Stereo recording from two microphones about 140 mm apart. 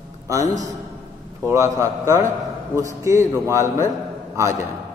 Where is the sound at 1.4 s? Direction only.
20° right (ahead or behind).